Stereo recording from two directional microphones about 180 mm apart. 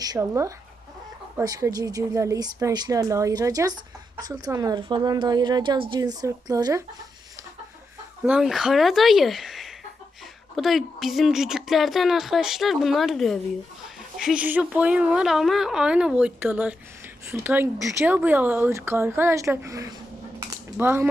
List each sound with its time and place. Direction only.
0.0 s a woman's voice: 20° right (ahead or behind)
8.2 s speech: centre (ahead or behind)